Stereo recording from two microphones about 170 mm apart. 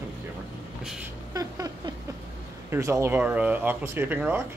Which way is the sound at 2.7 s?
15° right (ahead or behind).